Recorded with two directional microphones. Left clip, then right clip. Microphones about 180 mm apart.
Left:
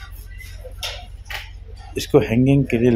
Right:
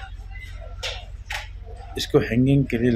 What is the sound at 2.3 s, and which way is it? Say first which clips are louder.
Speech: left 3 dB; 15° left (ahead or behind).